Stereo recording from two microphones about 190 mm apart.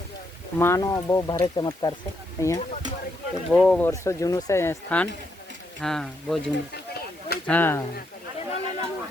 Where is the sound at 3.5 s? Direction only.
5° left (ahead or behind).